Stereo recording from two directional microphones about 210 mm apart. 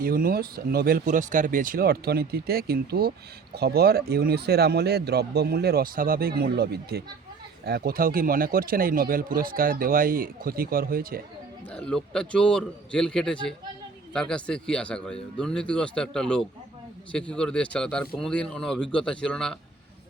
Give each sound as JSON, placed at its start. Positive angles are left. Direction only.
{"t": 0.0, "sound": "a man's voice", "side_deg": -45}
{"t": 11.7, "sound": "speech", "side_deg": 5}